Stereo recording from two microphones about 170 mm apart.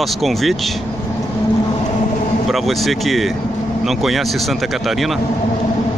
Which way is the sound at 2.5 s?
Centre (ahead or behind).